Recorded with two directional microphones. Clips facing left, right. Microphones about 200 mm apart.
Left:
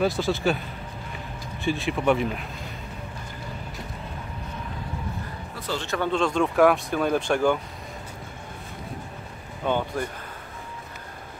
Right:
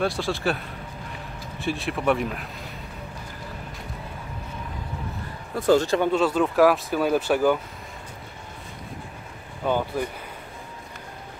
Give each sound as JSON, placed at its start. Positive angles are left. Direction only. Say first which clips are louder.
{"t": 0.0, "sound": "speech", "louder": "left 2 dB", "side_deg": 0}
{"t": 5.6, "sound": "speech", "louder": "right 13 dB", "side_deg": -50}
{"t": 5.9, "sound": "speech", "louder": "right 2 dB", "side_deg": -5}
{"t": 9.7, "sound": "speech", "louder": "right 1 dB", "side_deg": -5}